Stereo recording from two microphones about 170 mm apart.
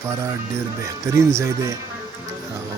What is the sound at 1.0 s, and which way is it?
Speech, 15° right (ahead or behind).